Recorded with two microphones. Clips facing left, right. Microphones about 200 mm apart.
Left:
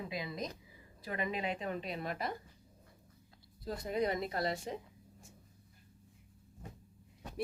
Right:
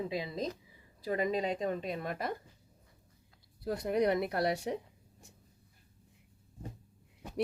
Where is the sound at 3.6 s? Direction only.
65° right (ahead or behind).